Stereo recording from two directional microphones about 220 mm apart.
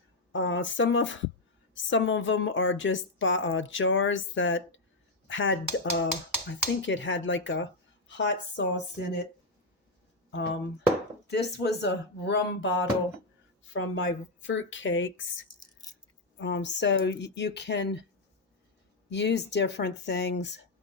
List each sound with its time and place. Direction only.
0.3 s a woman's voice: 60° left (ahead or behind)
10.3 s a woman's voice: 50° left (ahead or behind)
15.6 s rattle: 15° left (ahead or behind)
16.4 s speech: 55° left (ahead or behind)
19.1 s speech: 50° left (ahead or behind)